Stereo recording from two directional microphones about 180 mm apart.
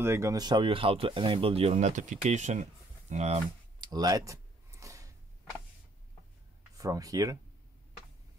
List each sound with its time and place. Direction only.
0.0 s speech: 15° right (ahead or behind); by 3.3 s 40° right (ahead or behind)
3.8 s a sound: 20° right (ahead or behind)
6.8 s speech: 20° right (ahead or behind)